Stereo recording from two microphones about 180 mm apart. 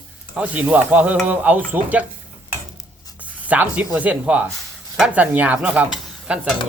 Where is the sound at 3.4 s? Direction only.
10° right (ahead or behind).